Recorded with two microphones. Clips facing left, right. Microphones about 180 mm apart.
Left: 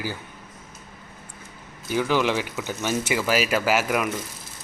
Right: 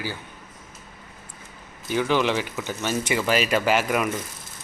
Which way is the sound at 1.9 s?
10° left (ahead or behind).